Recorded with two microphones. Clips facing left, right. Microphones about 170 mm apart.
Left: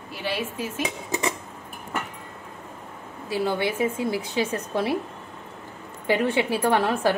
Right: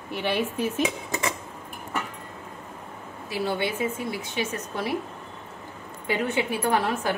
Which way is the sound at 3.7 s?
30° left (ahead or behind).